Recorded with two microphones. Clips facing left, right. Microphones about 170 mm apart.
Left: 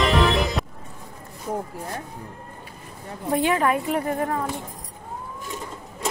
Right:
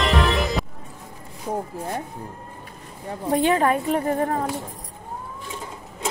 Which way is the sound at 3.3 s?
30° right (ahead or behind).